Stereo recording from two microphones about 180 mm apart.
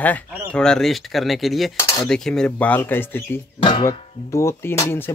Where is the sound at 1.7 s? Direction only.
15° left (ahead or behind).